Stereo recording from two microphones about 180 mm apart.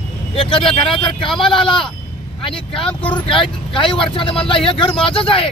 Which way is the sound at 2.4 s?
30° left (ahead or behind).